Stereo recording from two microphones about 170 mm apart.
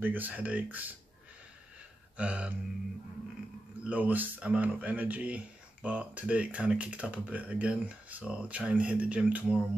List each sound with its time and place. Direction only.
0.0 s speech: 10° right (ahead or behind)
2.1 s speech: 5° right (ahead or behind)
3.8 s speech: 10° right (ahead or behind)